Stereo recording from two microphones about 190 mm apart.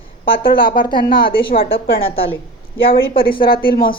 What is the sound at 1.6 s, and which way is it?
A woman's voice, 30° left (ahead or behind).